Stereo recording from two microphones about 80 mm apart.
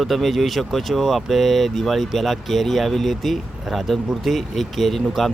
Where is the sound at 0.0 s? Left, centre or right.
Centre.